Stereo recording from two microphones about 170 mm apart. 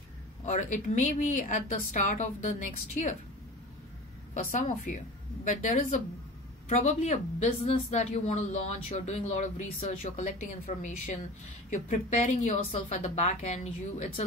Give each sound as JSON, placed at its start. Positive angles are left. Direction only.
{"t": 0.5, "sound": "a woman's voice", "side_deg": 45}
{"t": 4.3, "sound": "a woman's voice", "side_deg": 50}